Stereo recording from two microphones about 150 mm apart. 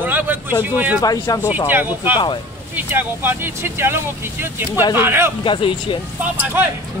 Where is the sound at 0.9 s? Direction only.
25° left (ahead or behind).